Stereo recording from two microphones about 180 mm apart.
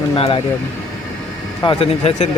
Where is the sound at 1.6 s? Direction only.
30° left (ahead or behind).